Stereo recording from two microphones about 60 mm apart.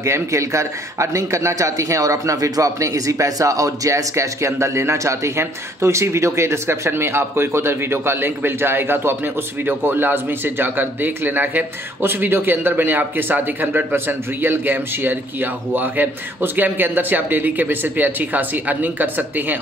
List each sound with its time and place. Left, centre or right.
0.0 s a man's voice: right